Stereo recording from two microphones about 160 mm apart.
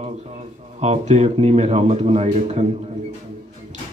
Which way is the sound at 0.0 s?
45° right (ahead or behind).